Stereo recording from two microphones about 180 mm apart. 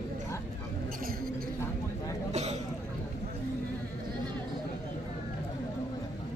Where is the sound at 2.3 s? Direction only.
40° right (ahead or behind).